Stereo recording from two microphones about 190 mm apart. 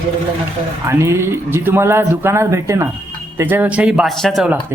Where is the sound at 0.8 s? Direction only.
15° right (ahead or behind).